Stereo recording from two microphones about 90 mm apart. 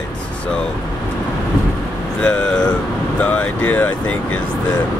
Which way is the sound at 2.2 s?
10° left (ahead or behind).